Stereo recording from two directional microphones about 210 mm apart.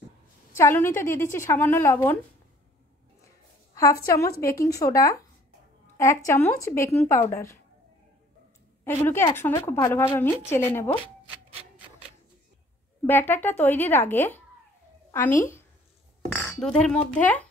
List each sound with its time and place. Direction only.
0.6 s a woman's voice: 10° left (ahead or behind)
4.0 s a woman's voice: 15° left (ahead or behind)
8.8 s a woman's voice: 10° left (ahead or behind)
13.0 s a woman's voice: 10° left (ahead or behind)